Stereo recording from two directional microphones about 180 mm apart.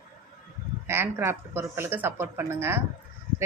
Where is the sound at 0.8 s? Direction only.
15° right (ahead or behind).